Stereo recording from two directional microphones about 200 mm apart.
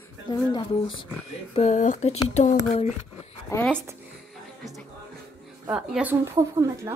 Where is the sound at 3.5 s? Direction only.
10° left (ahead or behind).